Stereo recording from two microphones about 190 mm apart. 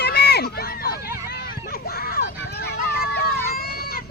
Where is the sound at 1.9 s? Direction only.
55° left (ahead or behind).